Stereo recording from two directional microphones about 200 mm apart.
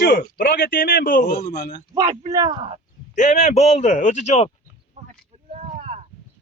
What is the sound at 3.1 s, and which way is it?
Speech, 40° left (ahead or behind).